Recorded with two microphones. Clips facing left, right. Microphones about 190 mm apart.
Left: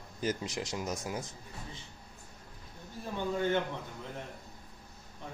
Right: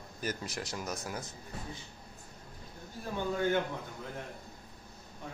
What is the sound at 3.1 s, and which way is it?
Speech, 5° right (ahead or behind).